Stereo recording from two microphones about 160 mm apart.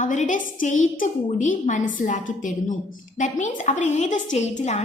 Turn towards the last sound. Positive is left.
turn(degrees=45)  # may be behind; listen again after turning